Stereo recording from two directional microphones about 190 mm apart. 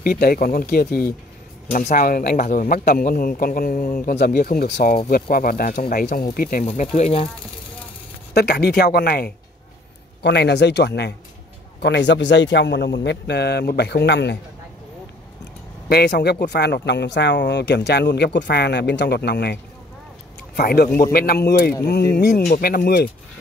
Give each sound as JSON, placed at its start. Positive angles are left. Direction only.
{"t": 0.0, "sound": "speech", "side_deg": 50}
{"t": 7.0, "sound": "speech", "side_deg": 35}
{"t": 8.3, "sound": "speech", "side_deg": 60}
{"t": 15.9, "sound": "speech", "side_deg": 60}